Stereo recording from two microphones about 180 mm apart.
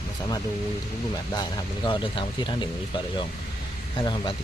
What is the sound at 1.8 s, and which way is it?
Speech, 25° left (ahead or behind).